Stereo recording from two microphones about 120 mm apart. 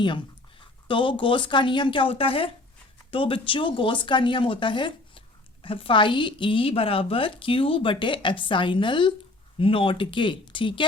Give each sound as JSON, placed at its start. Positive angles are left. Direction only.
{"t": 0.6, "sound": "a woman's voice", "side_deg": 45}